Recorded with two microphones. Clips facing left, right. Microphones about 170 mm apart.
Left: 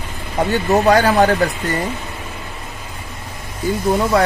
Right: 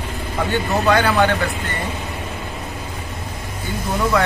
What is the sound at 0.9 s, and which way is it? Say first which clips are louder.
Speech: left 2 dB; 35° left (ahead or behind).